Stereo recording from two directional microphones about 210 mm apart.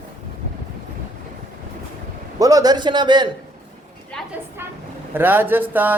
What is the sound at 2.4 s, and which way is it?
Speech, 15° right (ahead or behind).